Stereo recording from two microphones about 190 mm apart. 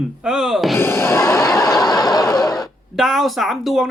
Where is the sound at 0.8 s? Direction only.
10° left (ahead or behind).